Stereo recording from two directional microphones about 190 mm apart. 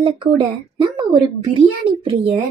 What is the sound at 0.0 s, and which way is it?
A woman's voice, 25° right (ahead or behind).